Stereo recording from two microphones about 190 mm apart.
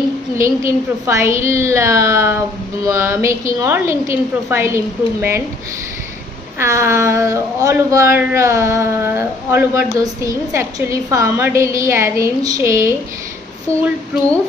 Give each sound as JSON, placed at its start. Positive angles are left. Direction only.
{"t": 0.4, "sound": "speech", "side_deg": -15}
{"t": 6.6, "sound": "speech", "side_deg": -15}